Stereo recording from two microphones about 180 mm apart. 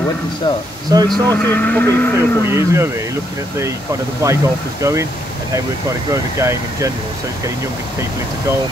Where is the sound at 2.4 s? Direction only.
15° right (ahead or behind).